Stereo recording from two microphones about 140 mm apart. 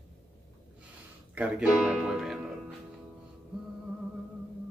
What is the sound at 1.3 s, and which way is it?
Speech, 10° right (ahead or behind).